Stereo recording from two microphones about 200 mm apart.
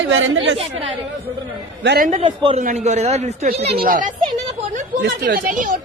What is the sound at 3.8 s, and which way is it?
A man's voice, 45° right (ahead or behind).